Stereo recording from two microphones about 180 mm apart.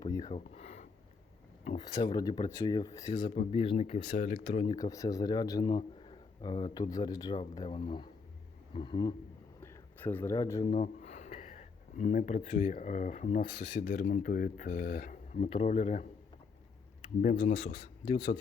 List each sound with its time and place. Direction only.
0.0 s a sound: 20° left (ahead or behind)
0.3 s a sound: 35° left (ahead or behind)
1.9 s speech: 25° left (ahead or behind)
9.6 s a sound: 10° left (ahead or behind)
10.7 s speech: 35° left (ahead or behind)
13.7 s speech: 55° left (ahead or behind)
15.4 s speech: 30° left (ahead or behind)
17.2 s speech: 45° left (ahead or behind)
17.5 s speech: 30° left (ahead or behind)